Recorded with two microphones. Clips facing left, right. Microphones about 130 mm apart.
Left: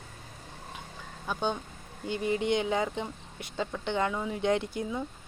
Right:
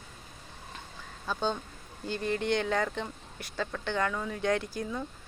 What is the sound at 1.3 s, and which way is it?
Speech, 15° left (ahead or behind).